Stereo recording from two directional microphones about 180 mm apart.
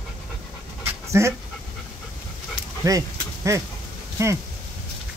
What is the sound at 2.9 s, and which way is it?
Dog, 20° right (ahead or behind).